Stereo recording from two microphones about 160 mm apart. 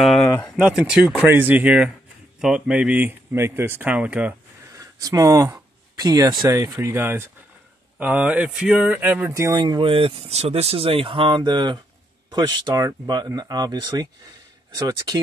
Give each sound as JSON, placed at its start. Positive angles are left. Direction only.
{"t": 0.0, "sound": "a sound", "side_deg": 0}
{"t": 0.6, "sound": "speech", "side_deg": -5}
{"t": 4.7, "sound": "speech", "side_deg": -20}